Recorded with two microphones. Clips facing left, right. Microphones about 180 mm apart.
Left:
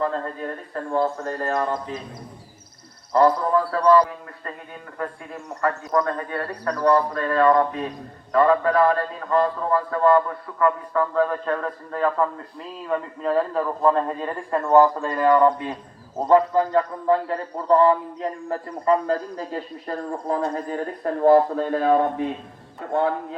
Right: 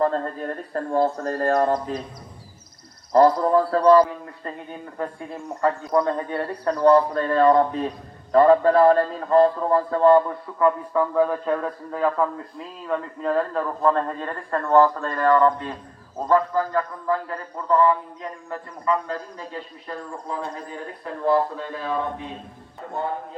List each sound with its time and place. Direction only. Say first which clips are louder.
1.2 s speech: right 4 dB; 40° right (ahead or behind)
3.1 s a man's voice: right 2 dB; 30° right (ahead or behind); by 22.0 s 50° left (ahead or behind)
22.9 s a man's voice: left 7 dB; 75° left (ahead or behind)